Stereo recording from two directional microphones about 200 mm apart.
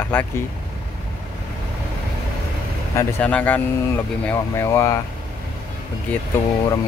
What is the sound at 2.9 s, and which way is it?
Speech, 5° left (ahead or behind).